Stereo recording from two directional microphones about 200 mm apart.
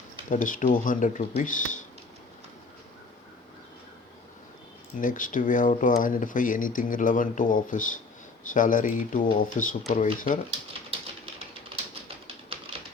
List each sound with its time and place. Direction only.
0.3 s speech: 40° left (ahead or behind)
4.9 s speech: 40° left (ahead or behind)